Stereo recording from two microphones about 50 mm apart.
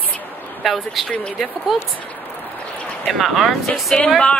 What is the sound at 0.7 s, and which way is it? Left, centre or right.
Speech, centre.